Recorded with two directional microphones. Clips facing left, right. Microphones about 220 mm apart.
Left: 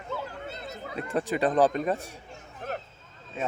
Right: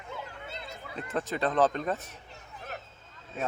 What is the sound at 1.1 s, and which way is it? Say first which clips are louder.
Speech: left 4 dB; 15° left (ahead or behind).